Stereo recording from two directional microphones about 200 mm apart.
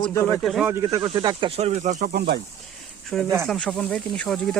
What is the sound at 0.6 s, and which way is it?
Speech, 15° right (ahead or behind).